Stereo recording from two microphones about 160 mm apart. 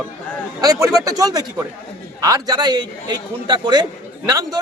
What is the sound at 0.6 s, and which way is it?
A man's voice, 25° right (ahead or behind).